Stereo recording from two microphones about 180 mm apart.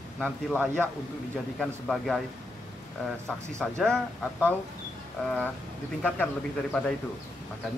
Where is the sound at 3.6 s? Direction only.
Centre (ahead or behind).